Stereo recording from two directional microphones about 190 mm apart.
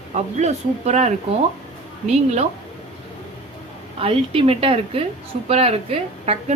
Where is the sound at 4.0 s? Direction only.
30° right (ahead or behind).